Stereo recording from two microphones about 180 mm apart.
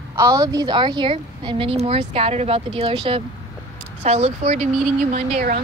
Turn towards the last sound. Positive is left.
turn(degrees=-50)  # may be behind; listen again after turning